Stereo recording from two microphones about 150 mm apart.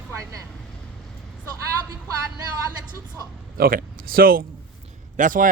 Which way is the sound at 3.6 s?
75° right (ahead or behind).